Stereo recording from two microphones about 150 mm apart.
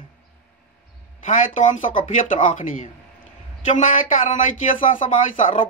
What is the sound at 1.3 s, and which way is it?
A man's voice, 60° left (ahead or behind).